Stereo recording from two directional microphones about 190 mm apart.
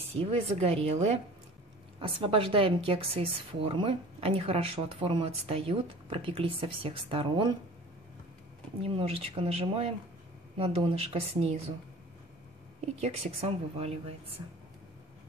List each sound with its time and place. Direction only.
0.2 s a woman's voice: 35° right (ahead or behind)
8.8 s a woman's voice: 30° right (ahead or behind)
12.8 s a woman's voice: 35° right (ahead or behind)